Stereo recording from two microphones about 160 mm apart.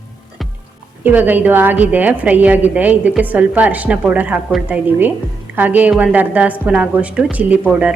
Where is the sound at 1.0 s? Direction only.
10° right (ahead or behind).